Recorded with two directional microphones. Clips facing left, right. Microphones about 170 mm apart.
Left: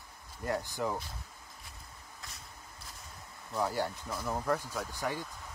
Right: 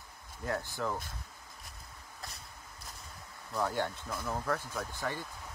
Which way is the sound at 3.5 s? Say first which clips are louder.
Even; 5° left (ahead or behind).